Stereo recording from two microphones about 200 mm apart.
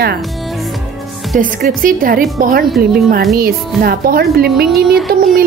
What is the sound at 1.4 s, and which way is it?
Speech, 45° right (ahead or behind).